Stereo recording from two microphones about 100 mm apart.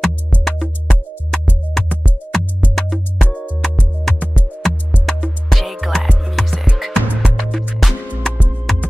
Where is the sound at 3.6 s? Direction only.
Centre (ahead or behind).